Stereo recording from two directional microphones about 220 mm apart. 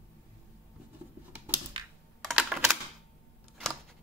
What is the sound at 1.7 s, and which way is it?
Computer keyboard, 25° right (ahead or behind).